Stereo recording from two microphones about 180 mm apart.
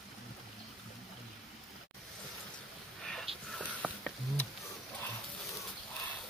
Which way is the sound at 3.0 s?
5° left (ahead or behind).